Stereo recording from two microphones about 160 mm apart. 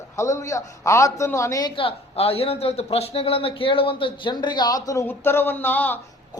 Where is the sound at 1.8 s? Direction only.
35° left (ahead or behind).